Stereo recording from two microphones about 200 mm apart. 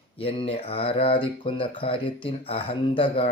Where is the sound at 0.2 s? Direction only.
30° left (ahead or behind).